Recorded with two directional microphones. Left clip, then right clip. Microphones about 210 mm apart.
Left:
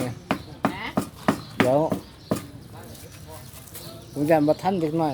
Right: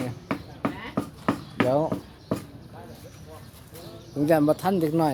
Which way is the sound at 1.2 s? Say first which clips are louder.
Left 3 dB; 55° left (ahead or behind).